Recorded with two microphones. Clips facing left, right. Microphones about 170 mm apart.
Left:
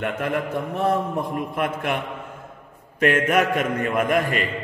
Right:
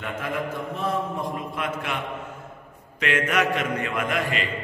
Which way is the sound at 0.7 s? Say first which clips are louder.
Left 5 dB; 60° left (ahead or behind).